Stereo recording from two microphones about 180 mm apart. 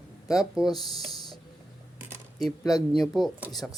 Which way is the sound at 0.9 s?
20° left (ahead or behind).